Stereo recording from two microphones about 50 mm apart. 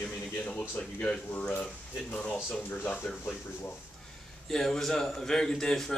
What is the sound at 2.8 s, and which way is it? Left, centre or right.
Speech, left.